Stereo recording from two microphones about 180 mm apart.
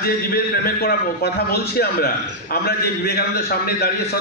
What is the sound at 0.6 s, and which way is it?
A man's voice, 60° left (ahead or behind).